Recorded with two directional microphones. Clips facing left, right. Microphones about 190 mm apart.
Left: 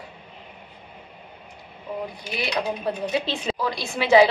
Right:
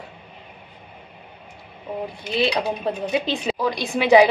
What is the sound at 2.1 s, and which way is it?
A woman's voice, 25° right (ahead or behind).